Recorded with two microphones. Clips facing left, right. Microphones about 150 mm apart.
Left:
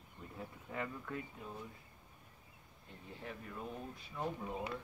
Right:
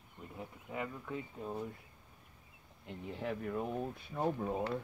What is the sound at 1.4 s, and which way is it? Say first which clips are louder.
Speech: right 8 dB; 40° right (ahead or behind).